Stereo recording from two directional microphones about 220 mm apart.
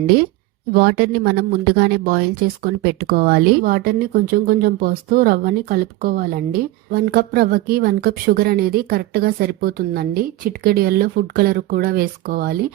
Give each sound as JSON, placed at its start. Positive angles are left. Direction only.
{"t": 0.7, "sound": "speech", "side_deg": -45}